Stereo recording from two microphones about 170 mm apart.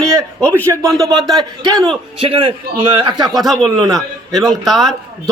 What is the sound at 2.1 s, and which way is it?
Speech, 30° right (ahead or behind).